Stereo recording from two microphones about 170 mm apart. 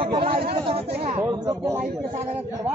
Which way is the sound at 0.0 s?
35° right (ahead or behind).